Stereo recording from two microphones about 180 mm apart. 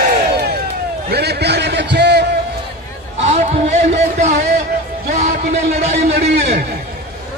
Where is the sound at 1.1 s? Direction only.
65° right (ahead or behind).